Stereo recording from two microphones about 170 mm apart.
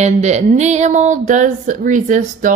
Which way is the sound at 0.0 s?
40° right (ahead or behind).